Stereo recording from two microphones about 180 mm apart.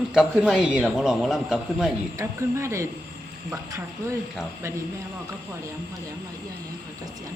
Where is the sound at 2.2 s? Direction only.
15° right (ahead or behind).